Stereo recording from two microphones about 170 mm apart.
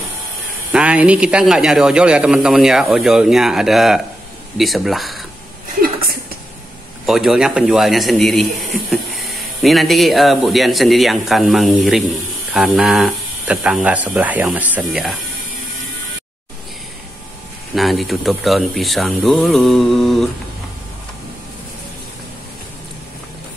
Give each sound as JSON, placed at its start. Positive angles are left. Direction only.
{"t": 0.7, "sound": "a man's voice", "side_deg": -5}
{"t": 5.8, "sound": "a sound", "side_deg": -60}
{"t": 7.1, "sound": "a man's voice", "side_deg": 0}
{"t": 17.7, "sound": "a man's voice", "side_deg": 0}